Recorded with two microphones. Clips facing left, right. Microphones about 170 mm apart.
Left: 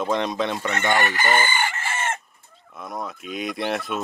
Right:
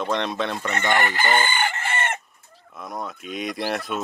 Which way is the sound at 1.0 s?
25° right (ahead or behind).